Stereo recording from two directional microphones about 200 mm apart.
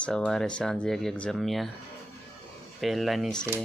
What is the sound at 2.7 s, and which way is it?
Speech, centre (ahead or behind).